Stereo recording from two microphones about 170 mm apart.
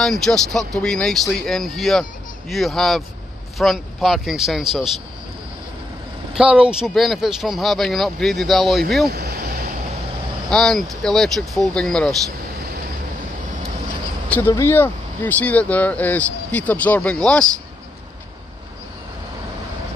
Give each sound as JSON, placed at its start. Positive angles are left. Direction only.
{"t": 0.0, "sound": "speech", "side_deg": 0}
{"t": 6.3, "sound": "speech", "side_deg": -5}
{"t": 9.1, "sound": "speech", "side_deg": -60}
{"t": 10.5, "sound": "speech", "side_deg": 5}
{"t": 14.5, "sound": "speech", "side_deg": 15}